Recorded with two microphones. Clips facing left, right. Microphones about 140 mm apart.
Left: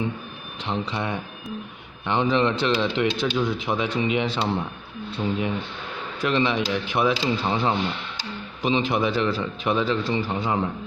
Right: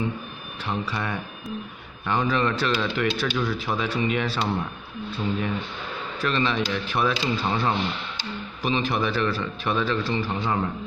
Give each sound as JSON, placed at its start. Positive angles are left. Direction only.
{"t": 0.6, "sound": "speech", "side_deg": 20}
{"t": 6.2, "sound": "speech", "side_deg": 15}